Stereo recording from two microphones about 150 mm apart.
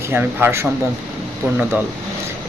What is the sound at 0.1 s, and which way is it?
Speech, 15° right (ahead or behind).